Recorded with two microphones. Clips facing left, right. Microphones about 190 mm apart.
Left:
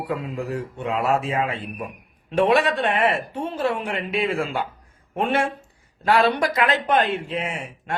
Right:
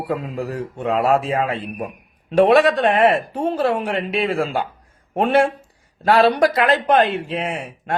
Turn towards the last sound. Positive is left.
turn(degrees=-35)  # may be behind; listen again after turning